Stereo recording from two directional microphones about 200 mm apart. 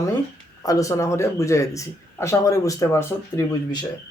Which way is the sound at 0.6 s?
15° left (ahead or behind).